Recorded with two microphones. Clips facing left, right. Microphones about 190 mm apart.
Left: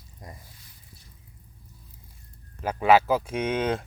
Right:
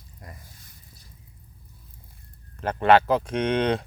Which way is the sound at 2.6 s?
5° left (ahead or behind).